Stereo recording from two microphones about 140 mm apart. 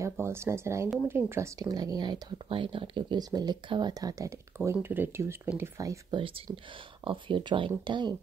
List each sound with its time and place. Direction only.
0.0 s speech: 20° right (ahead or behind)
4.7 s speech: 15° right (ahead or behind)
6.0 s speech: 35° right (ahead or behind)